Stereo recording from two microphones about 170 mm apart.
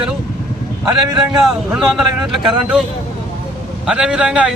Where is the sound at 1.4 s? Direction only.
Centre (ahead or behind).